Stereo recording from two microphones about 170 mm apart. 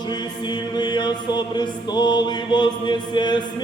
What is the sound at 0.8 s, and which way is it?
Chant, 25° left (ahead or behind).